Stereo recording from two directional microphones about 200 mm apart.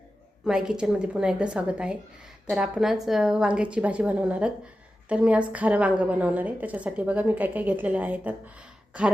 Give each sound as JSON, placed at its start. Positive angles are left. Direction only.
{"t": 0.4, "sound": "a woman's voice", "side_deg": -5}